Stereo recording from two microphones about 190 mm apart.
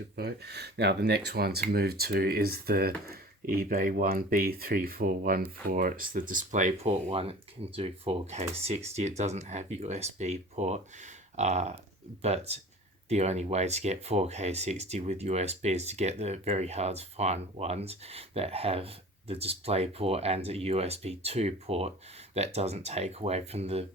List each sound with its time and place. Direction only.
0.2 s speech: 60° right (ahead or behind); by 23.8 s 30° right (ahead or behind)